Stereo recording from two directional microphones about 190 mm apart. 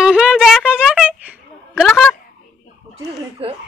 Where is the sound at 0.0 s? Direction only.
5° right (ahead or behind).